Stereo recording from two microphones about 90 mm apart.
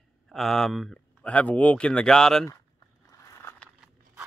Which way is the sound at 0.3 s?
5° left (ahead or behind).